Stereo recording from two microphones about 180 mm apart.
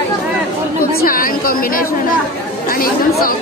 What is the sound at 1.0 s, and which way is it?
A woman's voice, 50° left (ahead or behind).